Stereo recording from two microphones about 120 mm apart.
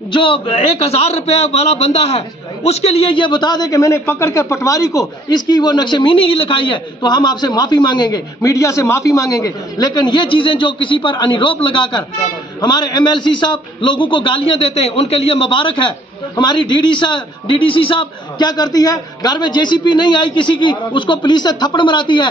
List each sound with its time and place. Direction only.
0.1 s a man's voice: 45° left (ahead or behind)
8.4 s a man's voice: 25° left (ahead or behind); by 22.3 s 40° left (ahead or behind)